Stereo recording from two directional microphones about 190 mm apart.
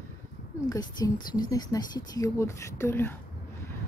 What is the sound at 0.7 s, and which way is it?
A woman's voice, 20° left (ahead or behind).